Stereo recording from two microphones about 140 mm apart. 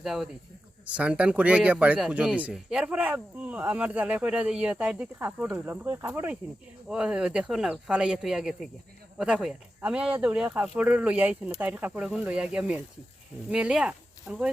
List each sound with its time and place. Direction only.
0.0 s speech: centre (ahead or behind)